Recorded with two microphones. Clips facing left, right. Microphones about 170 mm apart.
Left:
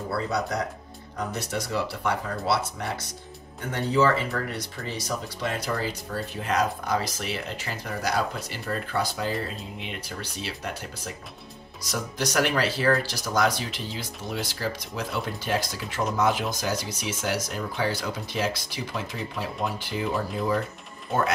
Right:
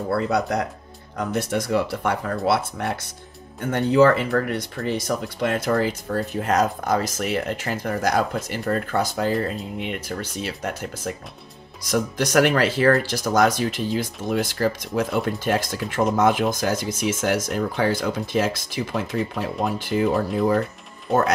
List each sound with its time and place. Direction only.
1.3 s speech: 55° right (ahead or behind)